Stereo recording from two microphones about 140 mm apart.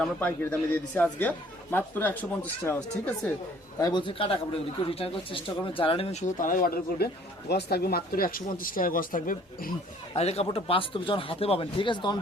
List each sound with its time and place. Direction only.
0.0 s a man's voice: 10° left (ahead or behind)
3.8 s speech: 30° left (ahead or behind); by 9.7 s 90° left
10.2 s speech: 50° left (ahead or behind)